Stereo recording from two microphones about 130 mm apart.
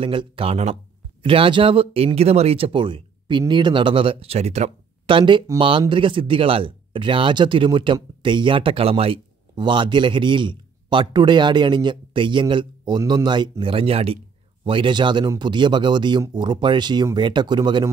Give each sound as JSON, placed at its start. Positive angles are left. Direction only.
{"t": 0.0, "sound": "speech", "side_deg": -40}
{"t": 5.0, "sound": "speech", "side_deg": -40}